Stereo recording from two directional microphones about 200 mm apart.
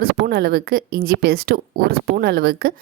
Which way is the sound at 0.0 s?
50° right (ahead or behind).